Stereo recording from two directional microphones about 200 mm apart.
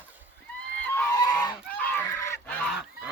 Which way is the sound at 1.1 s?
20° left (ahead or behind).